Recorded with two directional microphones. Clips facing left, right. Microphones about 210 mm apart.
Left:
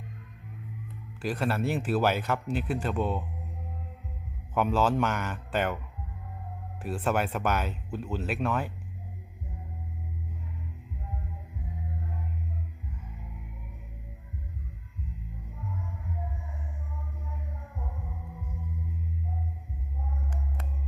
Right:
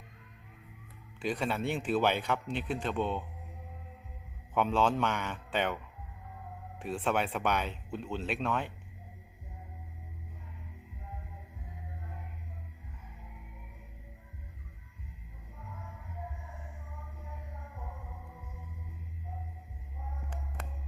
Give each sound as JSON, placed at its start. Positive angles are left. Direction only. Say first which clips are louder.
{"t": 1.2, "sound": "a man's voice", "louder": "left 3 dB", "side_deg": 5}
{"t": 4.5, "sound": "a man's voice", "louder": "left 3 dB", "side_deg": 5}
{"t": 6.8, "sound": "a man's voice", "louder": "left 3 dB", "side_deg": 5}